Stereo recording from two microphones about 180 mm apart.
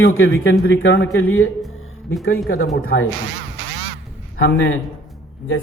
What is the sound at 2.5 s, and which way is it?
Speech, 50° left (ahead or behind).